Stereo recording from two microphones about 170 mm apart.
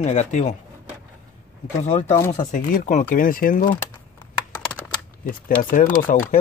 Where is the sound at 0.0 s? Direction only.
40° left (ahead or behind).